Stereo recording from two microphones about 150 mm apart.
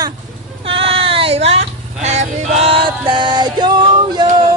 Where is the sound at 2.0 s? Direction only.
50° right (ahead or behind); by 4.4 s 30° right (ahead or behind).